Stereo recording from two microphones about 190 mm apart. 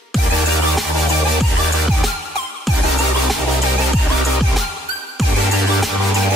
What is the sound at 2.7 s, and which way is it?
Music, centre (ahead or behind).